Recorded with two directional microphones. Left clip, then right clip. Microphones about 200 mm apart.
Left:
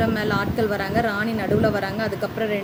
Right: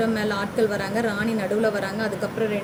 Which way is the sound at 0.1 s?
30° left (ahead or behind).